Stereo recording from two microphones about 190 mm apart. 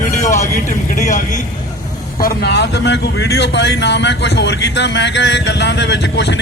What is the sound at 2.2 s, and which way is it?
Speech, 60° left (ahead or behind).